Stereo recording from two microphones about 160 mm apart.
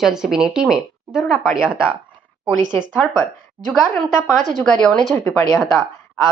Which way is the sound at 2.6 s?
30° right (ahead or behind).